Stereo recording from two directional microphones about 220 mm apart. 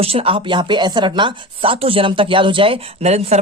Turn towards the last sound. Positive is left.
turn(degrees=-30)  # may be behind; listen again after turning